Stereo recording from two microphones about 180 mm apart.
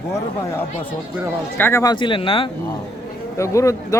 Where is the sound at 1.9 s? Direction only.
25° left (ahead or behind).